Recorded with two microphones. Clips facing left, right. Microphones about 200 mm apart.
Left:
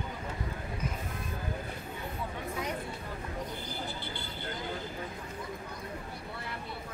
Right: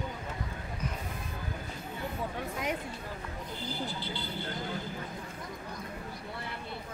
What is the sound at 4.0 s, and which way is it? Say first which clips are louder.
Vehicle: right 2 dB; 55° left (ahead or behind).